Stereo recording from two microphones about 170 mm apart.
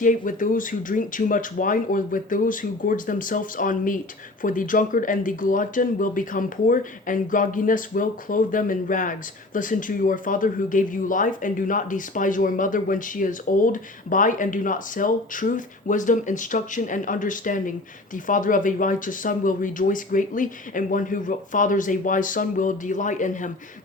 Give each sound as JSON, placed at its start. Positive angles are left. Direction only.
{"t": 0.0, "sound": "speech", "side_deg": 50}